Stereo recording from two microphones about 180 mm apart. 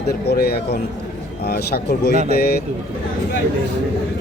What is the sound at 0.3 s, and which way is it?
Speech, 60° left (ahead or behind).